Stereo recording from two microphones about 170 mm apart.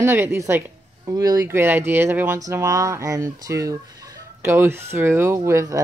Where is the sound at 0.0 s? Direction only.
10° right (ahead or behind).